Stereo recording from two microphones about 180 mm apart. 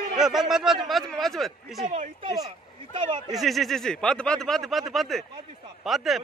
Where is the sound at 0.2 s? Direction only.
Centre (ahead or behind).